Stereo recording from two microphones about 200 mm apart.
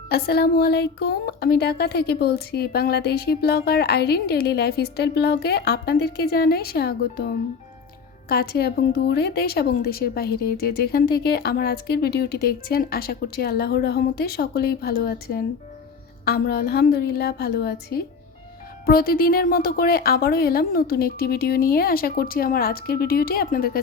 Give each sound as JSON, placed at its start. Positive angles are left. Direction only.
{"t": 0.1, "sound": "speech", "side_deg": 55}